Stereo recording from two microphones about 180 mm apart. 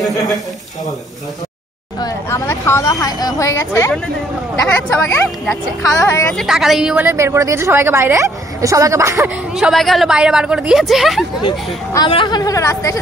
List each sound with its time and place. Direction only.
2.0 s speech: 20° left (ahead or behind)
4.8 s a woman's voice: 5° left (ahead or behind)
5.9 s a woman's voice: 15° left (ahead or behind)
6.3 s a woman's voice: centre (ahead or behind)
9.6 s a woman's voice: centre (ahead or behind)
11.4 s speech: 25° left (ahead or behind)